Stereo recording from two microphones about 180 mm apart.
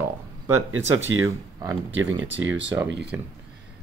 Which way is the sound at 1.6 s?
20° right (ahead or behind).